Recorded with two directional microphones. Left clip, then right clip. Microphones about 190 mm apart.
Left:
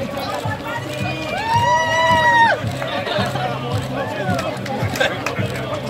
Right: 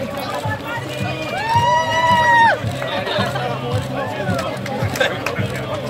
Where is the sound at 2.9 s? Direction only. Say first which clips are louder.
Right 1 dB; 25° right (ahead or behind).